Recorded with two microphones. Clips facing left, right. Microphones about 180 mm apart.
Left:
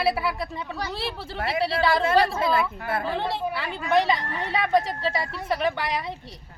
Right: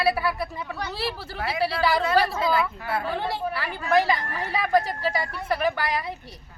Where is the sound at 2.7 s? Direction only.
50° left (ahead or behind).